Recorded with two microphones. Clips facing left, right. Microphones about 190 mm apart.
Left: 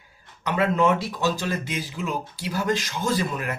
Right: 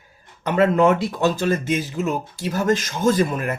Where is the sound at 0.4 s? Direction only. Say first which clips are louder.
Right 5 dB; 55° right (ahead or behind).